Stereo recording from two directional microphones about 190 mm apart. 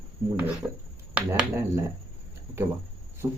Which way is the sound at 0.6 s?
10° right (ahead or behind).